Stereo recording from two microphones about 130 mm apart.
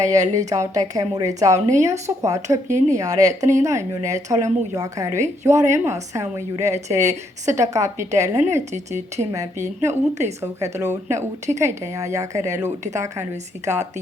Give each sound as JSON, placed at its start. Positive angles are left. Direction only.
{"t": 0.3, "sound": "a woman's voice", "side_deg": -25}